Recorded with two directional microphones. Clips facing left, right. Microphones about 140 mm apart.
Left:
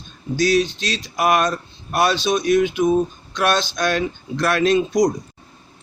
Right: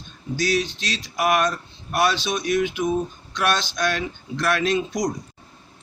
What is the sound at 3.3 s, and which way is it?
Speech, 45° left (ahead or behind).